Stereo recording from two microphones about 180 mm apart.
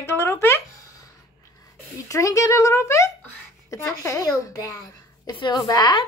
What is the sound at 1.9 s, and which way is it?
A child's voice, 20° left (ahead or behind).